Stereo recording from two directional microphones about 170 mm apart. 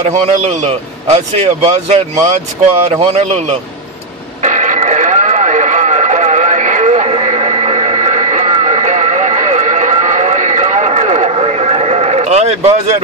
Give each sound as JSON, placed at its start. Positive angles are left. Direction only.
{"t": 0.0, "sound": "a man's voice", "side_deg": -45}
{"t": 4.4, "sound": "radio", "side_deg": -50}